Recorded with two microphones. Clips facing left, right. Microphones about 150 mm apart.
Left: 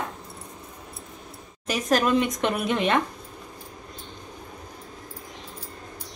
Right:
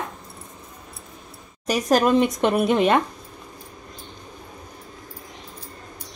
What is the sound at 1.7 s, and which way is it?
A woman's voice, 40° right (ahead or behind).